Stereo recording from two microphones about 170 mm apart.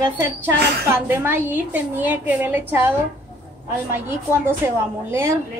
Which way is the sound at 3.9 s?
15° right (ahead or behind).